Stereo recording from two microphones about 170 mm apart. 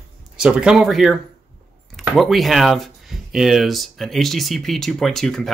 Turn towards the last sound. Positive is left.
turn(degrees=0)  # may be behind; listen again after turning